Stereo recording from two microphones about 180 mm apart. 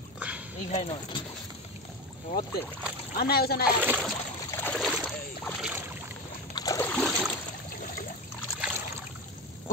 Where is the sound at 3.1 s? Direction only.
60° left (ahead or behind).